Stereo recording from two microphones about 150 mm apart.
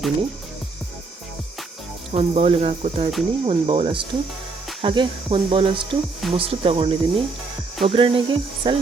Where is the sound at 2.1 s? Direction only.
40° right (ahead or behind).